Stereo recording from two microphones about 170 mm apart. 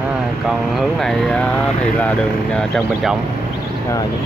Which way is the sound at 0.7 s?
5° left (ahead or behind).